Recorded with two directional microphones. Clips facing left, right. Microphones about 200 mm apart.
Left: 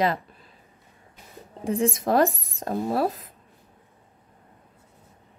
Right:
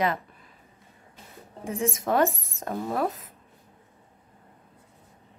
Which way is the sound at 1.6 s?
35° left (ahead or behind).